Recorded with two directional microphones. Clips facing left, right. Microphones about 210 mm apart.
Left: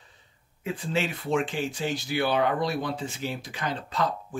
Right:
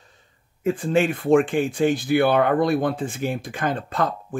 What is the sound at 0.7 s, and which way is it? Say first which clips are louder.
Speech: right 9 dB; 50° right (ahead or behind).